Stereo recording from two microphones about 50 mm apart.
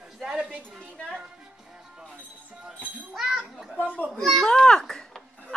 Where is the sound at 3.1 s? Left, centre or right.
Centre.